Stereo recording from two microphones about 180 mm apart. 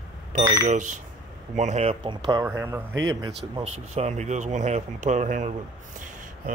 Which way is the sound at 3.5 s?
35° right (ahead or behind).